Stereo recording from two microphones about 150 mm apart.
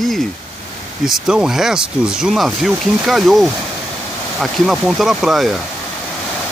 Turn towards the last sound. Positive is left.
turn(degrees=0)  # may be behind; listen again after turning